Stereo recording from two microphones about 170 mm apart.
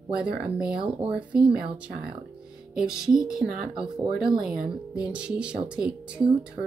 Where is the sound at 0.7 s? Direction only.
30° right (ahead or behind).